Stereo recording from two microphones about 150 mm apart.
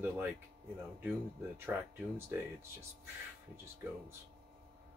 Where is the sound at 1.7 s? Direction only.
15° right (ahead or behind).